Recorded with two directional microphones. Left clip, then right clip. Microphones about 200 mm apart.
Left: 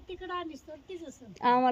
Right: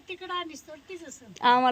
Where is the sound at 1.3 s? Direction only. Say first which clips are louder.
Right 4 dB; centre (ahead or behind).